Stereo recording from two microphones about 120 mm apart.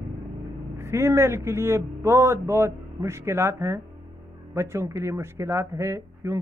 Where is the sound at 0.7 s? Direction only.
20° right (ahead or behind).